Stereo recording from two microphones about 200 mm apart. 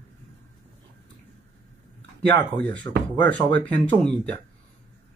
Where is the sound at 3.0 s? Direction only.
10° left (ahead or behind).